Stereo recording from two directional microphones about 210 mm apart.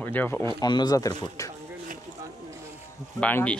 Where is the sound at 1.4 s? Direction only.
40° right (ahead or behind).